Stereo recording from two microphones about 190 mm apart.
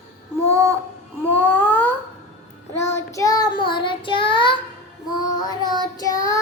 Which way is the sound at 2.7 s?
15° left (ahead or behind).